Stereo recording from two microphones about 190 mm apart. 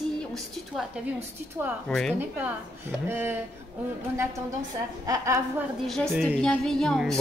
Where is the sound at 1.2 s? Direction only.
10° right (ahead or behind).